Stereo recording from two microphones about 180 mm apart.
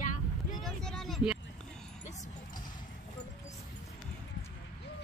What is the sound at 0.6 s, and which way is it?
Speech, centre (ahead or behind).